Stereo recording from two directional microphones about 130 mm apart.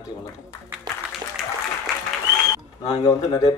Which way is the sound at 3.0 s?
25° left (ahead or behind).